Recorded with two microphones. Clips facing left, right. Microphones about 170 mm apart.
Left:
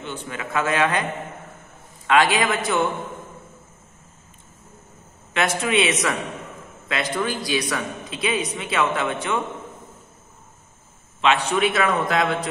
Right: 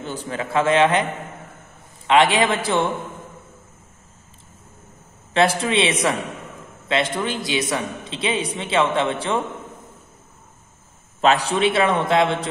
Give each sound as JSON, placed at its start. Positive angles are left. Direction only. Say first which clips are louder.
{"t": 0.0, "sound": "a man's voice", "louder": "right 4 dB", "side_deg": -35}
{"t": 2.0, "sound": "a man's voice", "louder": "right 2 dB", "side_deg": -25}
{"t": 5.3, "sound": "a man's voice", "louder": "right 3 dB", "side_deg": -30}
{"t": 11.1, "sound": "a man's voice", "louder": "right 2 dB", "side_deg": -40}